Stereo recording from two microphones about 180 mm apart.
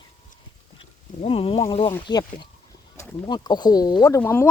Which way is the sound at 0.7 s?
35° left (ahead or behind).